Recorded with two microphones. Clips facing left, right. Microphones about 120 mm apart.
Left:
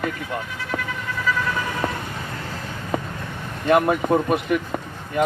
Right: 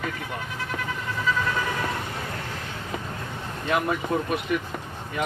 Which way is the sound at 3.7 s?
50° left (ahead or behind).